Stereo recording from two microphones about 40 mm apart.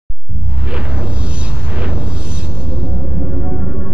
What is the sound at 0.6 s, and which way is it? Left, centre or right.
Music, right.